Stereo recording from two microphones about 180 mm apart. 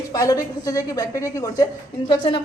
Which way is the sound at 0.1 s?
20° left (ahead or behind).